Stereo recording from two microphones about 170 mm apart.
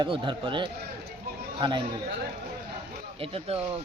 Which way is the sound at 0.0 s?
30° right (ahead or behind).